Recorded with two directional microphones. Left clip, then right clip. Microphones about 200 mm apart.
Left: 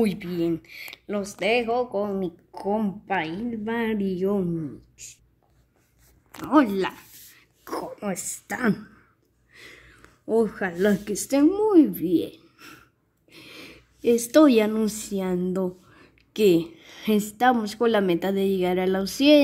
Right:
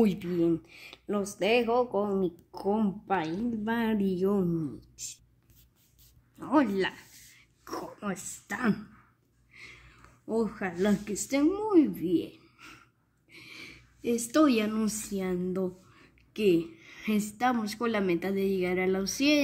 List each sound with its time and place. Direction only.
0.0 s speech: 15° right (ahead or behind)
6.4 s speech: 10° left (ahead or behind)
13.3 s a sound: 15° left (ahead or behind)
17.4 s speech: 15° left (ahead or behind)